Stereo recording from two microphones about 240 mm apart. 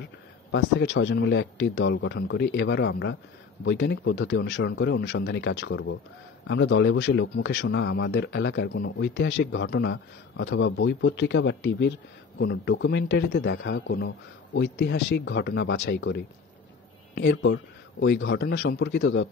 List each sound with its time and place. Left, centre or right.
0.5 s a man's voice: left